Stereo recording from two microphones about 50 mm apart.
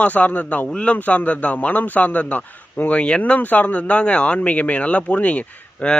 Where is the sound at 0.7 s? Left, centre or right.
Left.